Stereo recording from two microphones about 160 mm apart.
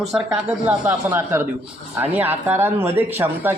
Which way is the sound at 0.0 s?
Centre (ahead or behind).